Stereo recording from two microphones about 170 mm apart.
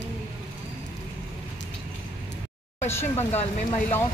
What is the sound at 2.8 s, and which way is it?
Speech, 15° left (ahead or behind).